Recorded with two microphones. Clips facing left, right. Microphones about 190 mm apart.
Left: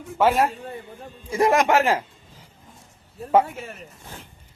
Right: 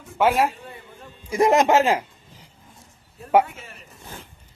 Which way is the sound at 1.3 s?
20° right (ahead or behind).